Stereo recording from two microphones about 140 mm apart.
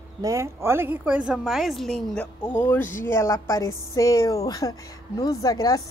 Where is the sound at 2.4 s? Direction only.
30° left (ahead or behind).